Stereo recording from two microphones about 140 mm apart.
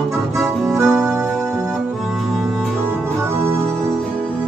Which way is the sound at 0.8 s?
15° right (ahead or behind).